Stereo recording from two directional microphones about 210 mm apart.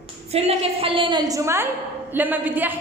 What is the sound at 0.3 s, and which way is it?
A woman's voice, 30° right (ahead or behind).